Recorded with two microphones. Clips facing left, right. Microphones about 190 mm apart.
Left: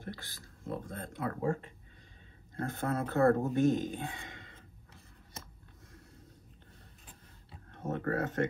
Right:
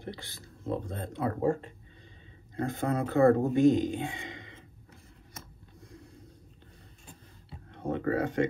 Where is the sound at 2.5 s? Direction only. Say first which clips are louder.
Right 4 dB; 15° right (ahead or behind).